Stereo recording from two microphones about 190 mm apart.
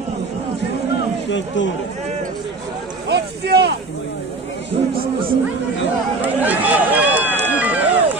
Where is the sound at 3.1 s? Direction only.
60° right (ahead or behind).